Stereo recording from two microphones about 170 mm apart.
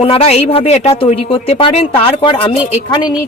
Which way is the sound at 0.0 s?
35° left (ahead or behind).